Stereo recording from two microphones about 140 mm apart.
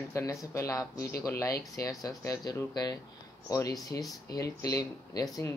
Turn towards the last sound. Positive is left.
turn(degrees=25)  # may be behind; listen again after turning